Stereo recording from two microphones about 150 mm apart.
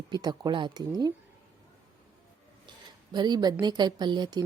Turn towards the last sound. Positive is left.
turn(degrees=-30)  # may be behind; listen again after turning